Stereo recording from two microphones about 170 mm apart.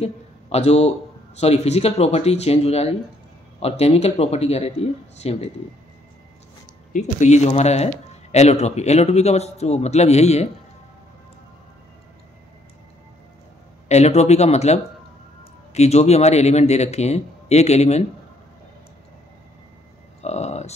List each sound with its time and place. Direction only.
0.0 s a man's voice: 40° left (ahead or behind)
6.9 s speech: 45° left (ahead or behind)
13.8 s speech: 40° left (ahead or behind)
20.2 s a sound: 40° left (ahead or behind)